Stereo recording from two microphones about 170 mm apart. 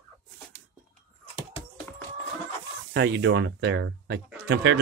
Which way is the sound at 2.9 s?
90° right.